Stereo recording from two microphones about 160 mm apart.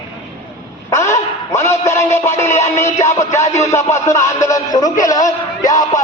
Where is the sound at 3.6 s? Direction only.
20° left (ahead or behind).